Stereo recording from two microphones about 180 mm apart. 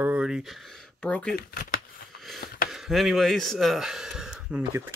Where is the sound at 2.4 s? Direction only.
50° left (ahead or behind).